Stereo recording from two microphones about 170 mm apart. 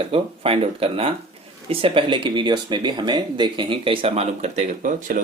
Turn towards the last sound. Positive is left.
turn(degrees=-50)  # may be behind; listen again after turning